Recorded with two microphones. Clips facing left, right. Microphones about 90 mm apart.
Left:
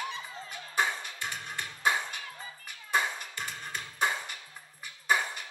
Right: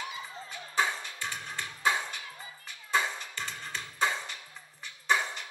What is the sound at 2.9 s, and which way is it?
Music, 10° left (ahead or behind).